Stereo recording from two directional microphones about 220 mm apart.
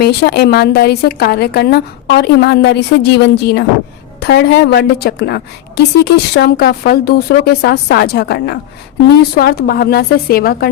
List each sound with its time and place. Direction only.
0.0 s a woman's voice: 45° left (ahead or behind)